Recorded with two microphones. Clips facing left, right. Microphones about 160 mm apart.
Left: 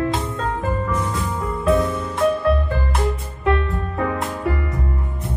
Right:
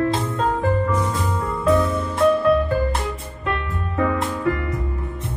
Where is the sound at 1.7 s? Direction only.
30° left (ahead or behind).